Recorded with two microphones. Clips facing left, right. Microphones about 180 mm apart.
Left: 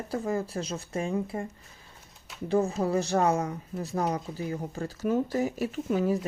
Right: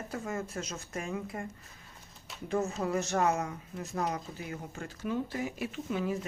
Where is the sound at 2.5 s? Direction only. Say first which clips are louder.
Left 5 dB; 35° left (ahead or behind).